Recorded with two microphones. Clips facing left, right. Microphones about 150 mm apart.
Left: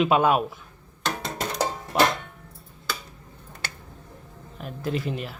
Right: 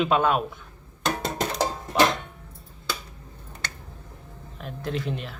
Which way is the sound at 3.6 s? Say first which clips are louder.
Even; 10° left (ahead or behind).